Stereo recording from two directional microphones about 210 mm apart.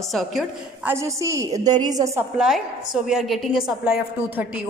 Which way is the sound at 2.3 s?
Centre (ahead or behind).